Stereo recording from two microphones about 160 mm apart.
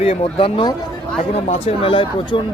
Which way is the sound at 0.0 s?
35° left (ahead or behind).